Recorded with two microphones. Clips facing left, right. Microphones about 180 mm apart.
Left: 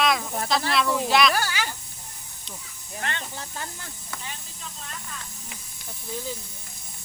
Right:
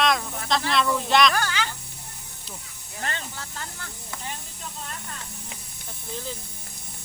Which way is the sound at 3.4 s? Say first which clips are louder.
Left 1 dB; 15° left (ahead or behind).